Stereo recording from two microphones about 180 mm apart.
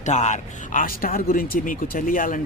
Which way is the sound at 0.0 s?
40° left (ahead or behind).